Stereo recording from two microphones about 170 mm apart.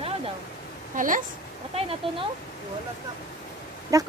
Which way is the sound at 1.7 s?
35° right (ahead or behind).